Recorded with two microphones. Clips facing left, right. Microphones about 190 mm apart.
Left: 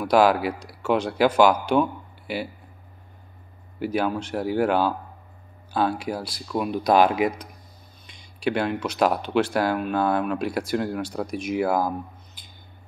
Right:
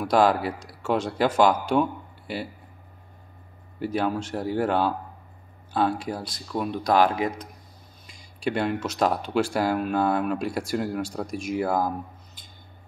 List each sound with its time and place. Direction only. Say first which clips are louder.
0.0 s speech: left 2 dB; 5° left (ahead or behind)
3.8 s speech: left 1 dB; centre (ahead or behind)
6.9 s speech: left 3 dB; 15° left (ahead or behind)
8.1 s a sound: left 2 dB; centre (ahead or behind)
8.9 s speech: left 3 dB; 5° left (ahead or behind)